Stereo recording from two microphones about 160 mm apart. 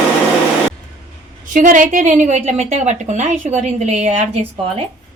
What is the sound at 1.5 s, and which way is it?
A woman's voice, 55° right (ahead or behind).